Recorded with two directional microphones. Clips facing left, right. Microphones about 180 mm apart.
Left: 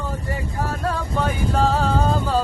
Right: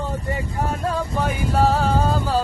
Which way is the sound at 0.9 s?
10° right (ahead or behind).